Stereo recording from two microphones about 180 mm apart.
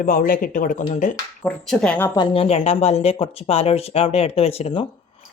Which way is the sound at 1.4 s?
5° left (ahead or behind).